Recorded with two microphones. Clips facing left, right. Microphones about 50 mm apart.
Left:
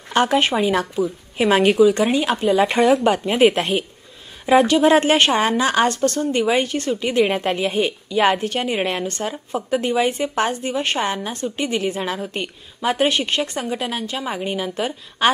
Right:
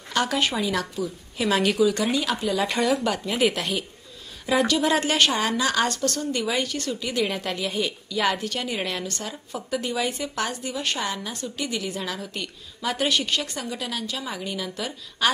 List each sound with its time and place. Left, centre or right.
0.1 s a woman's voice: left